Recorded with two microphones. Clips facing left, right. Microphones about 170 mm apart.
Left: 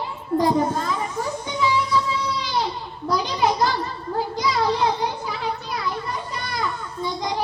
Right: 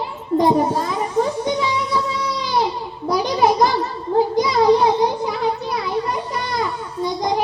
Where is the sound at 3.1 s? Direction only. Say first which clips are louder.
Right 5 dB; 15° right (ahead or behind).